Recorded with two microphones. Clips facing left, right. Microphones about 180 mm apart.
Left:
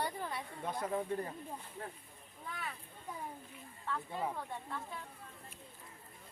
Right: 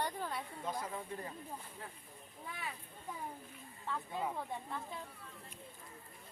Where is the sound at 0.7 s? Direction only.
45° left (ahead or behind).